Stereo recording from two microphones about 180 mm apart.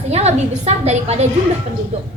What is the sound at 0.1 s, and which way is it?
A woman's voice, 35° right (ahead or behind).